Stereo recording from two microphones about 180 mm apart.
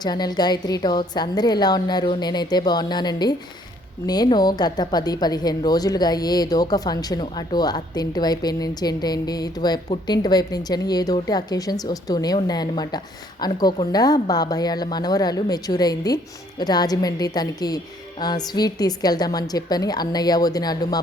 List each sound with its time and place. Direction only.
0.0 s a woman's voice: 20° left (ahead or behind)